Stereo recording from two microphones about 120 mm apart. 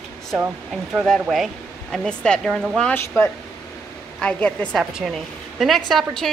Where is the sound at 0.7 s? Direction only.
5° right (ahead or behind).